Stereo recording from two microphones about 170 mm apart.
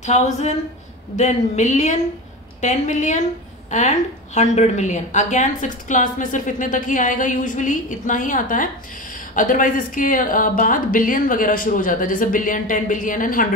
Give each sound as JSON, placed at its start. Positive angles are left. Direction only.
{"t": 0.0, "sound": "a woman's voice", "side_deg": 45}